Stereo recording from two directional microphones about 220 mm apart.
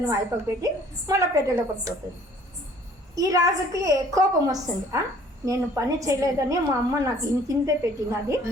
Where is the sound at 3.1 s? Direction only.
15° right (ahead or behind).